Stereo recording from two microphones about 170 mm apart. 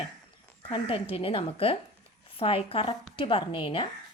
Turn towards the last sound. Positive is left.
turn(degrees=30)  # may be behind; listen again after turning